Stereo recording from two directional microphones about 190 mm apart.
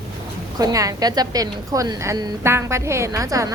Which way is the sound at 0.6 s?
20° right (ahead or behind).